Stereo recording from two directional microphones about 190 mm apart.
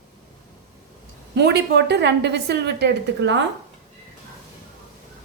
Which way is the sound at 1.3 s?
60° right (ahead or behind).